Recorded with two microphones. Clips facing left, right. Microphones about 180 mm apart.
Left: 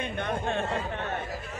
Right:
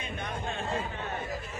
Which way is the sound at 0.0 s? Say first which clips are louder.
Left 6 dB; 65° left (ahead or behind).